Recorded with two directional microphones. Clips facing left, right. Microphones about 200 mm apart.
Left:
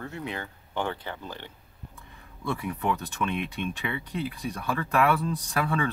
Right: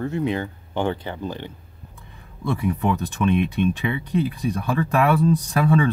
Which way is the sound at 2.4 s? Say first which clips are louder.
Right 6 dB; 30° right (ahead or behind).